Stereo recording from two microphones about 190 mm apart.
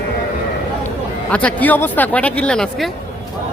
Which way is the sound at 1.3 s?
10° left (ahead or behind).